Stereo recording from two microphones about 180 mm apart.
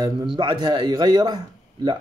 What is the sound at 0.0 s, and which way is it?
Speech, 25° right (ahead or behind).